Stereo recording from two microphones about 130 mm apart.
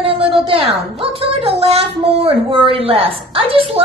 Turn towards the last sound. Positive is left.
turn(degrees=-45)  # may be behind; listen again after turning